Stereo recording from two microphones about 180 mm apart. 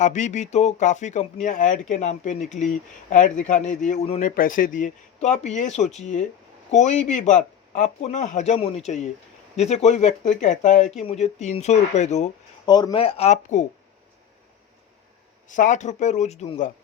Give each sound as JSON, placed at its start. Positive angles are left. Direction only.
{"t": 0.0, "sound": "speech", "side_deg": 40}
{"t": 12.6, "sound": "speech", "side_deg": 25}
{"t": 15.4, "sound": "speech", "side_deg": 45}